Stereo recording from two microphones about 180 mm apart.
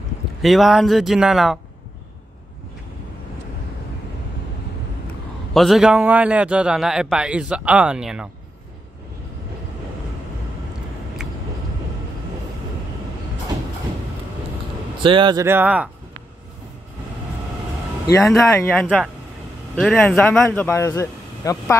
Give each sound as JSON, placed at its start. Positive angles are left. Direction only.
{"t": 0.4, "sound": "a man's voice", "side_deg": 0}
{"t": 5.5, "sound": "a man's voice", "side_deg": 0}
{"t": 15.0, "sound": "a man's voice", "side_deg": -25}
{"t": 15.4, "sound": "speech", "side_deg": -10}
{"t": 18.3, "sound": "speech", "side_deg": 10}